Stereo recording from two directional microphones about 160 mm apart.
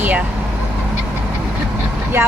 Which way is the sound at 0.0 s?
10° right (ahead or behind).